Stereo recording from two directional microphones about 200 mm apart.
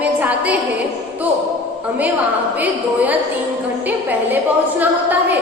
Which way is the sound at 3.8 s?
10° right (ahead or behind).